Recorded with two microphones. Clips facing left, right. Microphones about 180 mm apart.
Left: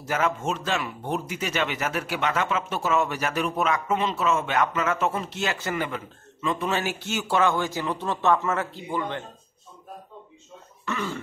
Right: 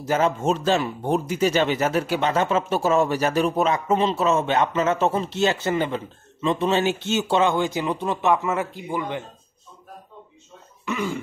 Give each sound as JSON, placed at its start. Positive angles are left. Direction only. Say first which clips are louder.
{"t": 0.0, "sound": "speech", "louder": "right 5 dB", "side_deg": -30}
{"t": 10.9, "sound": "cough", "louder": "right 4 dB", "side_deg": -15}